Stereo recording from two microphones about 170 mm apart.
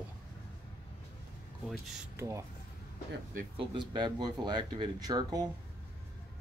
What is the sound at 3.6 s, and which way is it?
Speech, 25° right (ahead or behind).